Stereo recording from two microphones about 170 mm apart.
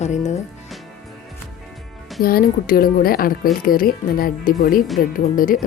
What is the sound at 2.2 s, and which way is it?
Speech, 60° left (ahead or behind).